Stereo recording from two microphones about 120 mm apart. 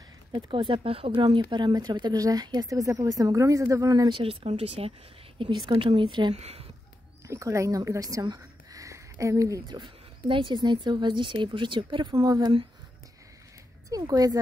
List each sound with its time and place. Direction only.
0.3 s speech: 40° right (ahead or behind)
4.1 s speech: 50° right (ahead or behind)
6.3 s speech: 55° right (ahead or behind)
7.2 s speech: 25° right (ahead or behind); by 12.1 s 40° right (ahead or behind)
12.1 s speech: 30° right (ahead or behind)
13.8 s speech: 30° right (ahead or behind)